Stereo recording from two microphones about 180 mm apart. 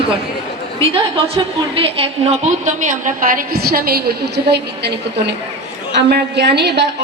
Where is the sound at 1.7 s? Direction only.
30° right (ahead or behind); by 6.9 s 70° right (ahead or behind).